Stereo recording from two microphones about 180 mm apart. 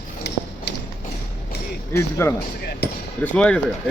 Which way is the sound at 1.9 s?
15° left (ahead or behind).